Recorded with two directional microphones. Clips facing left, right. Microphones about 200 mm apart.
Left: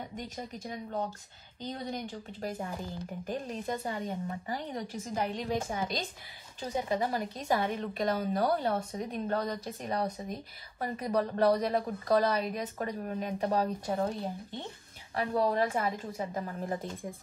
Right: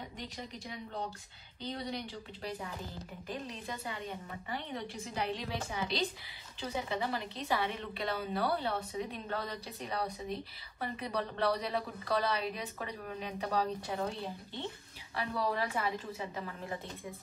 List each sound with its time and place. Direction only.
0.1 s a woman's voice: 45° left (ahead or behind)
15.1 s a woman's voice: 45° left (ahead or behind)